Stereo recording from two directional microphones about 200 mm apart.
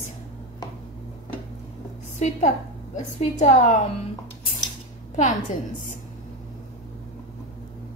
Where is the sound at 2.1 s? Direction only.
35° left (ahead or behind).